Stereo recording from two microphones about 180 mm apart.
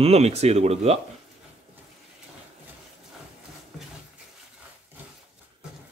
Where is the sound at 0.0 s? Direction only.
35° right (ahead or behind).